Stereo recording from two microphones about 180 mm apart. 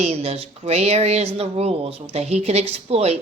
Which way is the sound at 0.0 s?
35° right (ahead or behind).